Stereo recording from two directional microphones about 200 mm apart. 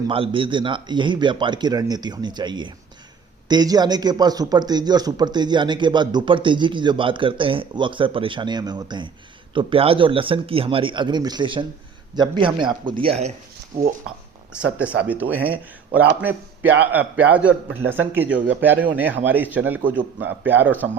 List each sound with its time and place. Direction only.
0.1 s speech: 25° right (ahead or behind)
14.5 s a man's voice: 5° right (ahead or behind)
16.8 s a man's voice: 10° right (ahead or behind)